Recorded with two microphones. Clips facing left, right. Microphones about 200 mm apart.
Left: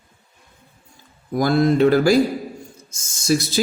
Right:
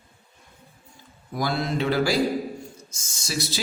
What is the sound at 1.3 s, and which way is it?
Speech, 45° left (ahead or behind).